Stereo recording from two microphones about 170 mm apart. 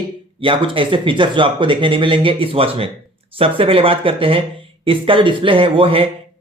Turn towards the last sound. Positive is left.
turn(degrees=-30)  # may be behind; listen again after turning